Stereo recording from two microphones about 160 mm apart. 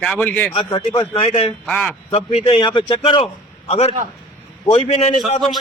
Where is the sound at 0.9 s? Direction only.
35° left (ahead or behind).